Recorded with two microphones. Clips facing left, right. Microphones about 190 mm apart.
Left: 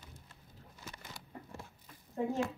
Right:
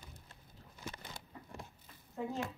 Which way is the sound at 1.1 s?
15° right (ahead or behind).